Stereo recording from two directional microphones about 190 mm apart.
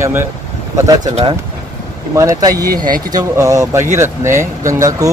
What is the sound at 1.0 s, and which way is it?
Speech, 35° right (ahead or behind).